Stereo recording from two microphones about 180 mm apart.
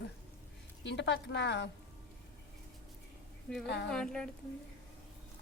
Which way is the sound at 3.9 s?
5° left (ahead or behind).